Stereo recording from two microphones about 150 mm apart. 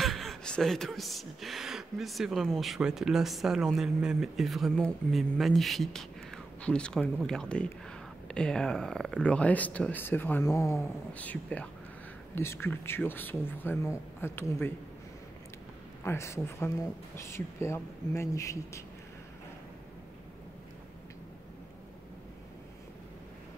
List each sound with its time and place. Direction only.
0.0 s speech: centre (ahead or behind)
16.0 s speech: 15° left (ahead or behind)